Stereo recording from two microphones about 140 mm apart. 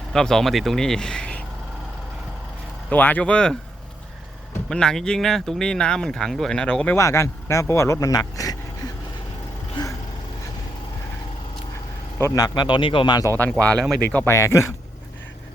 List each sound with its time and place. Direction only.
0.1 s speech: 5° left (ahead or behind)
2.9 s speech: 10° left (ahead or behind)
4.7 s speech: 5° left (ahead or behind)
6.9 s speech: 20° left (ahead or behind)
12.2 s a man's voice: 25° left (ahead or behind)
13.2 s speech: 15° left (ahead or behind)